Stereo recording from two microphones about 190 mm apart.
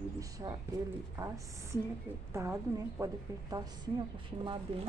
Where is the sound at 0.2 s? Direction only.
20° right (ahead or behind).